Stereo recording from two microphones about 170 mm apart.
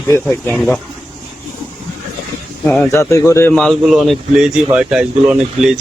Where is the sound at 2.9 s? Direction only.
15° left (ahead or behind).